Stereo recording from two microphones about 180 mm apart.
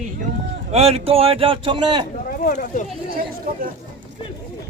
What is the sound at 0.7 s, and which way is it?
Speech, 35° right (ahead or behind).